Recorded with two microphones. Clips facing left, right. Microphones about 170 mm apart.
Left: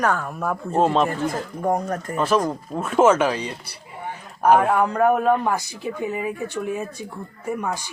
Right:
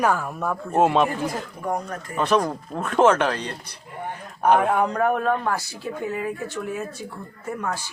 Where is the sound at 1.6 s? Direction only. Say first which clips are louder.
Left 6 dB; 45° left (ahead or behind).